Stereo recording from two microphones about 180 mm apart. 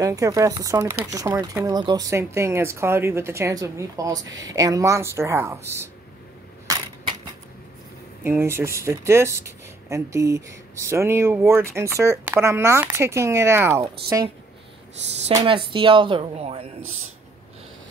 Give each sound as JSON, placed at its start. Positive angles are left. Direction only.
{"t": 0.0, "sound": "speech", "side_deg": -20}
{"t": 6.7, "sound": "a sound", "side_deg": -20}
{"t": 8.2, "sound": "speech", "side_deg": -15}
{"t": 15.4, "sound": "speech", "side_deg": -30}